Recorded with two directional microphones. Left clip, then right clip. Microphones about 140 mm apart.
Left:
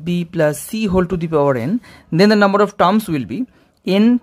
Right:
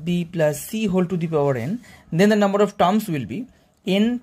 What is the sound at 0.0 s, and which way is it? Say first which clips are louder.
Speech: left 4 dB; 35° left (ahead or behind).